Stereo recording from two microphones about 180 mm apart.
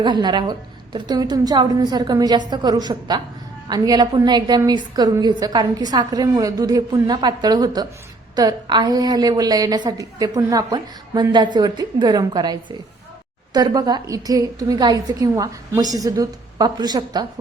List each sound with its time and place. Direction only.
0.0 s a woman's voice: 25° right (ahead or behind)